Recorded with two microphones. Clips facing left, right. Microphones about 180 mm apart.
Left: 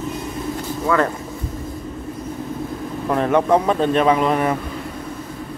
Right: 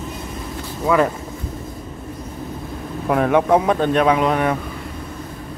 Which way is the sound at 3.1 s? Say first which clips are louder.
Right 1 dB; 5° right (ahead or behind).